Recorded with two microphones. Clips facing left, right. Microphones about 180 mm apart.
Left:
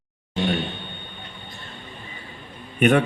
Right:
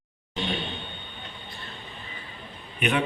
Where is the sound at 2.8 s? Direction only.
50° left (ahead or behind).